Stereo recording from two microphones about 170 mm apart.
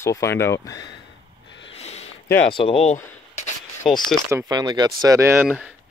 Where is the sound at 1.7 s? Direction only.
35° left (ahead or behind).